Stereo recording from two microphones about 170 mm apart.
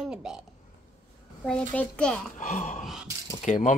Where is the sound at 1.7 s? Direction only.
5° left (ahead or behind).